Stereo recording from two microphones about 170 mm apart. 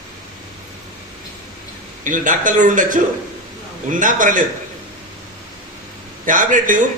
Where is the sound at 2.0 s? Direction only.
50° right (ahead or behind).